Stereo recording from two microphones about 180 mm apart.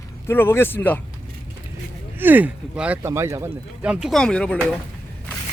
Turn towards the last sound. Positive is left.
turn(degrees=5)  # may be behind; listen again after turning